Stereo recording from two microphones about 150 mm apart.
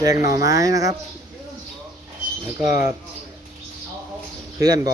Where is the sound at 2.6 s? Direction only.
70° left (ahead or behind).